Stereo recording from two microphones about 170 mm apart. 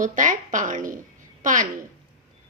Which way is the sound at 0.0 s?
50° right (ahead or behind).